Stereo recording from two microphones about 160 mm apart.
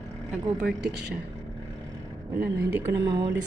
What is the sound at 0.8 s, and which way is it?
Speech, 90° right.